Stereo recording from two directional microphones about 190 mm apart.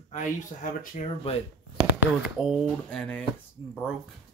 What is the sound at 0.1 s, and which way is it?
Speech, 45° left (ahead or behind).